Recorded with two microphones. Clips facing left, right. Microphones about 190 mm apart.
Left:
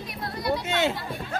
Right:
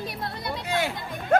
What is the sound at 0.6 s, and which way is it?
Speech, 25° left (ahead or behind).